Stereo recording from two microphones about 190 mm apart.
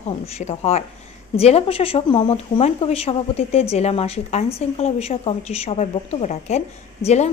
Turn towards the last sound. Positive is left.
turn(degrees=35)  # may be behind; listen again after turning